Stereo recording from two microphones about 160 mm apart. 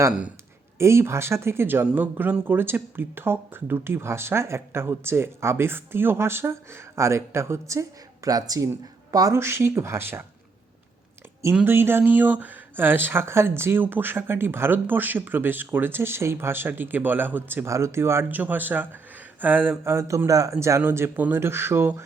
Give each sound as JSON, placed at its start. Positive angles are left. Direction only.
{"t": 0.8, "sound": "speech", "side_deg": -15}
{"t": 11.5, "sound": "speech", "side_deg": -15}